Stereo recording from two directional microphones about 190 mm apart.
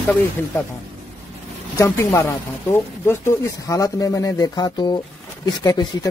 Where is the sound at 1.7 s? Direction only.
15° left (ahead or behind).